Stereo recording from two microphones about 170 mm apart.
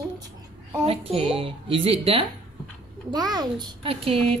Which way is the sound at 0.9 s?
35° right (ahead or behind).